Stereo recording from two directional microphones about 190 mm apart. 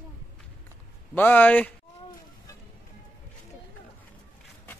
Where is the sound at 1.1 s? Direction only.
10° left (ahead or behind).